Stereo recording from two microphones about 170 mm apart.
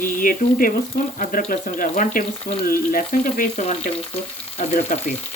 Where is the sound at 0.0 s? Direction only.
55° left (ahead or behind).